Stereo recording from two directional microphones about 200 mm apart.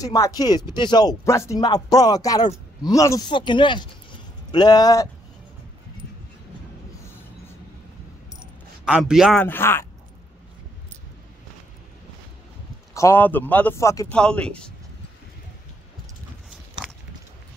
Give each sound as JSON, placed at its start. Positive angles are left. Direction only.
{"t": 0.0, "sound": "speech", "side_deg": 15}
{"t": 8.8, "sound": "speech", "side_deg": -5}
{"t": 12.9, "sound": "a man's voice", "side_deg": 15}
{"t": 14.1, "sound": "speech", "side_deg": 5}